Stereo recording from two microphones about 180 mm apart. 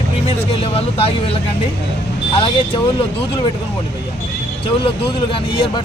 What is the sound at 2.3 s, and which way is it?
Speech, 30° left (ahead or behind).